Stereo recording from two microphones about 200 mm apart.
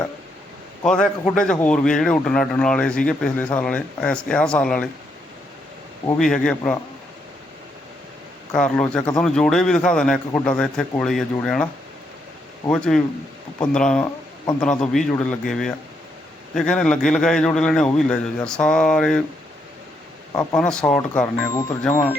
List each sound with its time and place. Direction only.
1.2 s speech: 5° left (ahead or behind)
6.1 s speech: 5° left (ahead or behind)
8.5 s speech: 5° left (ahead or behind)
12.7 s speech: 5° left (ahead or behind)
20.3 s speech: 20° left (ahead or behind)
20.6 s speech: 5° left (ahead or behind)